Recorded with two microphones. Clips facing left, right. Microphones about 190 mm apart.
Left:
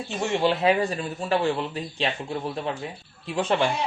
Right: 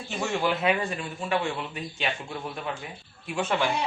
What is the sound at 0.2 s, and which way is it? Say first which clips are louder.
A man's voice: left 4 dB; 30° left (ahead or behind).